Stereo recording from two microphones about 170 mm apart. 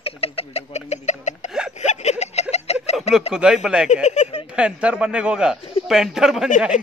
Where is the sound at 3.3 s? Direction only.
5° right (ahead or behind).